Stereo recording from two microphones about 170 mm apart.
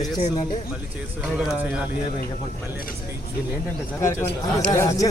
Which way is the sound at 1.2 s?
5° right (ahead or behind).